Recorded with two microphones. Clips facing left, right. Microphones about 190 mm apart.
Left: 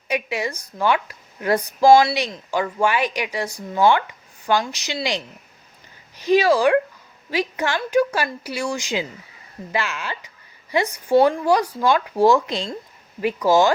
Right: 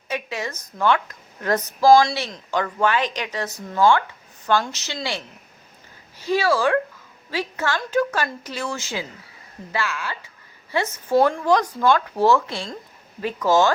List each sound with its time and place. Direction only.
0.1 s speech: 10° left (ahead or behind)